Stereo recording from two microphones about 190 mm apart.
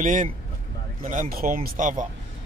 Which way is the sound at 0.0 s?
45° right (ahead or behind).